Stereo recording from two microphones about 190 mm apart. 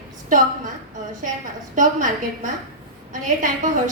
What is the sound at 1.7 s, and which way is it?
A woman's voice, 40° right (ahead or behind).